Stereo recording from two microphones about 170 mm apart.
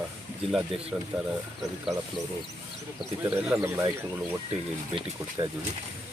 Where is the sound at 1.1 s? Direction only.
5° right (ahead or behind).